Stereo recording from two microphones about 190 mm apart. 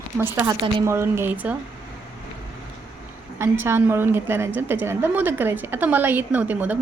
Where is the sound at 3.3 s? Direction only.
15° right (ahead or behind).